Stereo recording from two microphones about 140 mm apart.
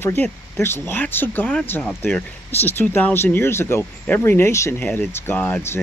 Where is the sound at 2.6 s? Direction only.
15° left (ahead or behind).